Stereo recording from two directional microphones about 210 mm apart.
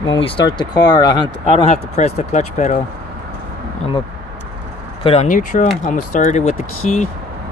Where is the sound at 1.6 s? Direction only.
30° left (ahead or behind).